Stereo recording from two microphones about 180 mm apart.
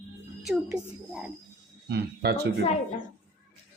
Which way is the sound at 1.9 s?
65° right (ahead or behind).